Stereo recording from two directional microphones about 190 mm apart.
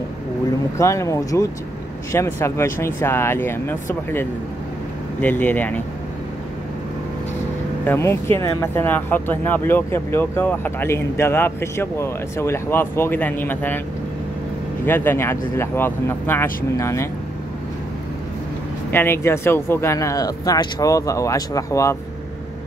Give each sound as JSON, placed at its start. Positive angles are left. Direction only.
{"t": 0.7, "sound": "speech", "side_deg": 15}
{"t": 7.8, "sound": "speech", "side_deg": 10}
{"t": 14.9, "sound": "speech", "side_deg": 10}
{"t": 18.9, "sound": "speech", "side_deg": 10}